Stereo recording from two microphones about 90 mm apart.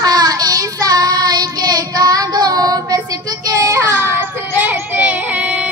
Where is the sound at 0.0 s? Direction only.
45° right (ahead or behind).